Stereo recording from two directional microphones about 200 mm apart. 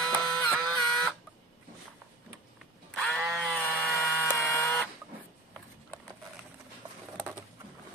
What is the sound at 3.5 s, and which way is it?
Buzzer, 5° left (ahead or behind).